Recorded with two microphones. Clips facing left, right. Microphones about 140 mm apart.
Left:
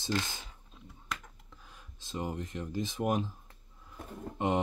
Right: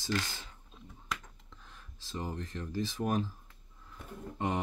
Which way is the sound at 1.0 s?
5° left (ahead or behind).